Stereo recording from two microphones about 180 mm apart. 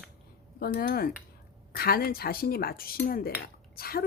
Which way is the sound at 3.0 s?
55° left (ahead or behind).